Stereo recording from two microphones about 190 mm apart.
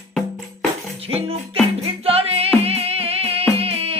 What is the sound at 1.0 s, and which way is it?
Music, 30° right (ahead or behind).